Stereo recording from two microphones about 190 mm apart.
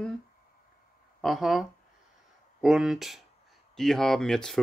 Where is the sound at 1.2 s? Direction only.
Centre (ahead or behind).